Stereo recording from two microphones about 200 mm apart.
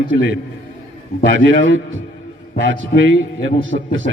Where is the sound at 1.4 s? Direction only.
70° right (ahead or behind).